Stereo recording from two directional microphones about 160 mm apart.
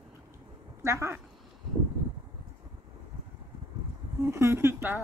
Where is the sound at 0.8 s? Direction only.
15° right (ahead or behind).